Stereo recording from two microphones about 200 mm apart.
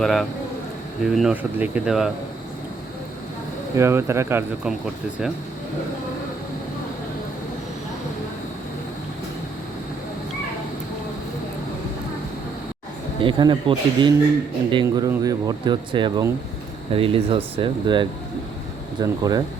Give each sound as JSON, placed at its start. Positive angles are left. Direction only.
{"t": 0.0, "sound": "speech", "side_deg": 0}
{"t": 3.8, "sound": "speech", "side_deg": -15}
{"t": 13.2, "sound": "speech", "side_deg": -25}